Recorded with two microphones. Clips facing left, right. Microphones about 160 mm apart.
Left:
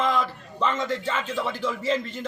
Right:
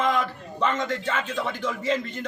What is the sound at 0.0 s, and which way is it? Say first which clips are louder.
A man's voice: even; centre (ahead or behind).